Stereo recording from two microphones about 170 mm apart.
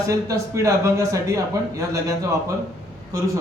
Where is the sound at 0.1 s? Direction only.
20° right (ahead or behind).